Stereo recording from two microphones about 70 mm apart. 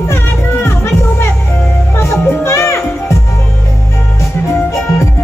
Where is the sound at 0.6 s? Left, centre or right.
Left.